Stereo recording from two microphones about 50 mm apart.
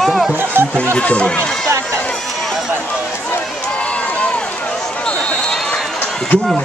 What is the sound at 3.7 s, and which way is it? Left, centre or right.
Run, left.